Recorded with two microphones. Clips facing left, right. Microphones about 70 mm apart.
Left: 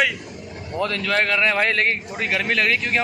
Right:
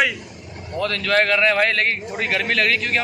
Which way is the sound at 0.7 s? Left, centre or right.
Centre.